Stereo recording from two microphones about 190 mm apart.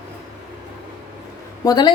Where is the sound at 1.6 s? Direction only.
20° left (ahead or behind).